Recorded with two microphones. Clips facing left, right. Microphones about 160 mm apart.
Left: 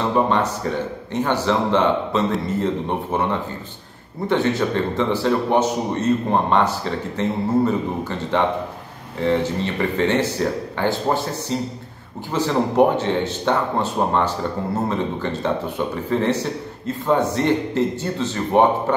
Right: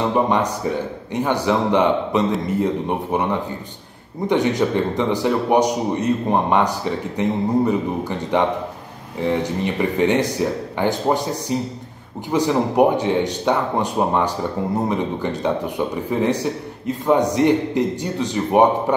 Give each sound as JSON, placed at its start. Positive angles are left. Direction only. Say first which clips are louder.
{"t": 0.3, "sound": "a man's voice", "louder": "right 1 dB", "side_deg": -15}